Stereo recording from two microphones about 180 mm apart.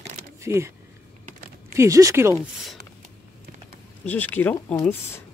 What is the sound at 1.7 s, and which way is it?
Speech, 15° right (ahead or behind).